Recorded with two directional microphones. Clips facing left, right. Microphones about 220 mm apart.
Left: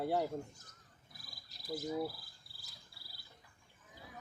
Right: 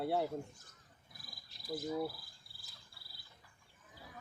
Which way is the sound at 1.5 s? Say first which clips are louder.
Even; 40° left (ahead or behind).